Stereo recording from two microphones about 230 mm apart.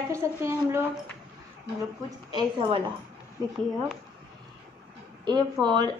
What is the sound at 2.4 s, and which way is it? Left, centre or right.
Speech, right.